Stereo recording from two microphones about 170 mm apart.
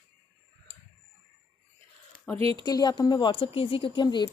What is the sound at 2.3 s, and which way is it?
Speech, 35° right (ahead or behind).